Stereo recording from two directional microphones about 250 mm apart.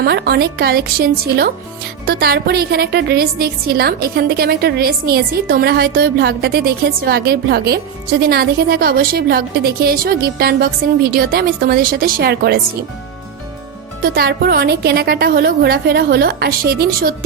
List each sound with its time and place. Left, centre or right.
0.0 s a woman's voice: right
14.0 s a woman's voice: right